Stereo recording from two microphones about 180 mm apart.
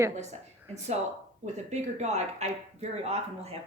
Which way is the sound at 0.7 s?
40° right (ahead or behind).